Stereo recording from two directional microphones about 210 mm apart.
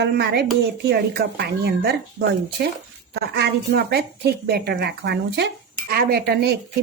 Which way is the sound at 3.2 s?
50° right (ahead or behind).